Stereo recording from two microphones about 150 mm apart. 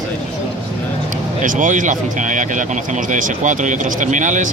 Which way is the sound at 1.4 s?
60° right (ahead or behind).